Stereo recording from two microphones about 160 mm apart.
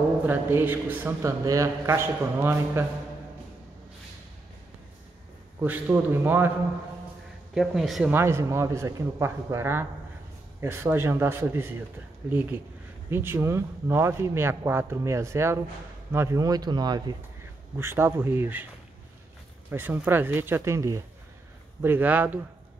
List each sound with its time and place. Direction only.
0.3 s speech: 15° right (ahead or behind)
5.6 s speech: 10° right (ahead or behind)
7.5 s speech: centre (ahead or behind)
8.1 s speech: 15° right (ahead or behind)
13.1 s speech: 15° right (ahead or behind)
17.7 s speech: 15° right (ahead or behind)
19.7 s speech: 15° right (ahead or behind)